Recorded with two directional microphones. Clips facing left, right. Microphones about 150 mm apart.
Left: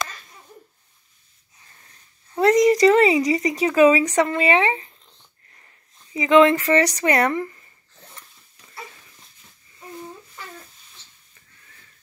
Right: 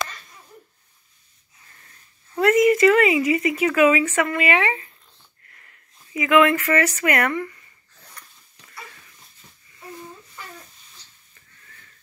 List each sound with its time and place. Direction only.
2.5 s speech: 35° left (ahead or behind); by 4.9 s 20° left (ahead or behind)
5.5 s sniff: 25° left (ahead or behind)
6.1 s speech: 25° left (ahead or behind)
8.2 s dog: 25° left (ahead or behind)